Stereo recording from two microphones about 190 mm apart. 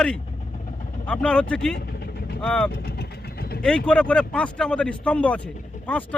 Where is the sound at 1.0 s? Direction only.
5° left (ahead or behind).